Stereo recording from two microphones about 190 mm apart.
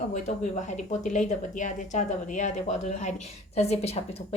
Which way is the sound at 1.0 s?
40° left (ahead or behind).